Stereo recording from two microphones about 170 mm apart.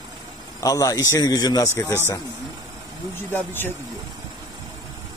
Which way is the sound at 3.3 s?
10° left (ahead or behind).